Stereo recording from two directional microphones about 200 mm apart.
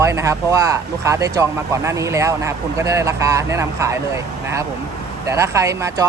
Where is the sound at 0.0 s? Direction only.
15° right (ahead or behind).